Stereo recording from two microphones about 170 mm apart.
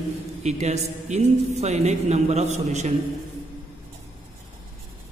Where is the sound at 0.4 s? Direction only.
40° right (ahead or behind).